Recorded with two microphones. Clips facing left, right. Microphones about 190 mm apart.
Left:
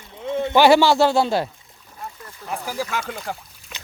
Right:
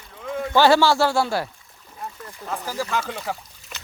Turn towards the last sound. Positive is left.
turn(degrees=0)  # may be behind; listen again after turning